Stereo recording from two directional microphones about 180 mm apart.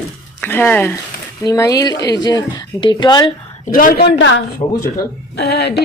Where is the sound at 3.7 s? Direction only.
50° left (ahead or behind).